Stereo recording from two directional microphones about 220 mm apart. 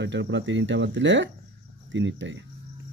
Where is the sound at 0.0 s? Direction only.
55° right (ahead or behind).